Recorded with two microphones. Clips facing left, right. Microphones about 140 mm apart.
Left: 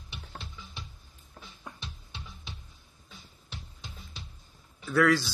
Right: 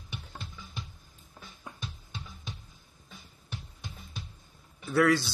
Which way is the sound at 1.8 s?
45° right (ahead or behind).